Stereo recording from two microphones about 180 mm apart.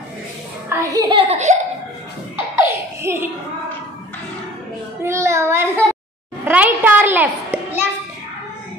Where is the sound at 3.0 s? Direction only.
15° right (ahead or behind).